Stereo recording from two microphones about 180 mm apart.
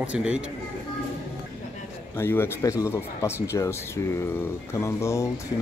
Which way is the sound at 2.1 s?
15° left (ahead or behind).